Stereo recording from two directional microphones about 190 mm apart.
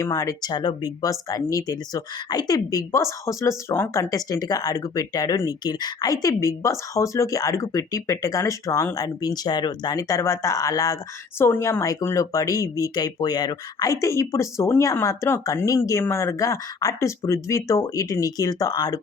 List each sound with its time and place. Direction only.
0.0 s a woman's voice: 15° left (ahead or behind)